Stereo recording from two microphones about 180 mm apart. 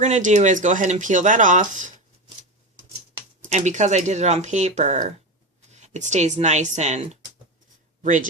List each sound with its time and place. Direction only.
0.0 s speech: 40° right (ahead or behind)
3.4 s a woman's voice: 40° right (ahead or behind)